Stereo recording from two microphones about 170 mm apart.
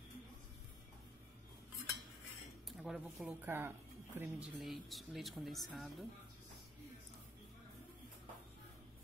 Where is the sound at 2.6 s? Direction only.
Centre (ahead or behind).